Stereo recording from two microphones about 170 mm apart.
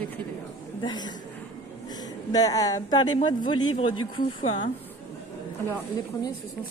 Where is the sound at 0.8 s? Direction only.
25° left (ahead or behind).